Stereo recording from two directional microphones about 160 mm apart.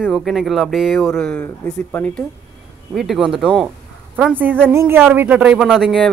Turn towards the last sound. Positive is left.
turn(degrees=0)  # may be behind; listen again after turning